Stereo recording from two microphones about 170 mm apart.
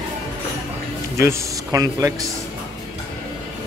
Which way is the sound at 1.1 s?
20° right (ahead or behind).